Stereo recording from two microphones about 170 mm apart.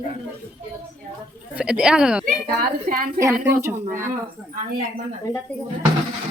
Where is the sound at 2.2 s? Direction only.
55° right (ahead or behind).